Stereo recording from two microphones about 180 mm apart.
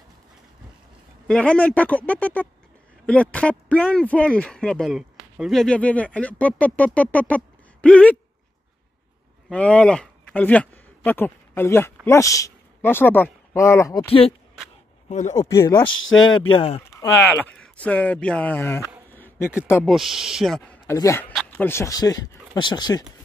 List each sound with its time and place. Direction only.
1.2 s speech: 5° left (ahead or behind)
9.5 s speech: 5° left (ahead or behind)
15.0 s speech: 40° left (ahead or behind)
15.3 s speech: 15° left (ahead or behind)
16.5 s speech: 30° left (ahead or behind)
17.3 s speech: 10° left (ahead or behind)
19.1 s a sound: 10° left (ahead or behind)
19.8 s speech: centre (ahead or behind); by 23.0 s 25° left (ahead or behind)